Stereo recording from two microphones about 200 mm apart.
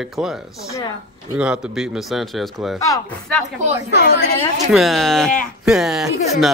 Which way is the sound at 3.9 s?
55° left (ahead or behind).